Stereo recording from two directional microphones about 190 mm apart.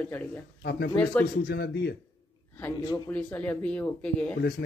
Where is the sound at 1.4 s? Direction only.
60° left (ahead or behind).